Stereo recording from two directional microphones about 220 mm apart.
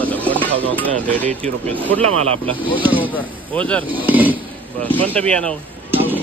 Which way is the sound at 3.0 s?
5° left (ahead or behind).